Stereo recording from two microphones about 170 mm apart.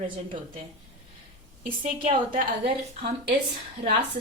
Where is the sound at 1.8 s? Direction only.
40° right (ahead or behind).